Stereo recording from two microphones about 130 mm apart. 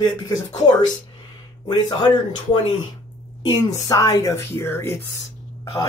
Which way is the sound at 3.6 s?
30° left (ahead or behind).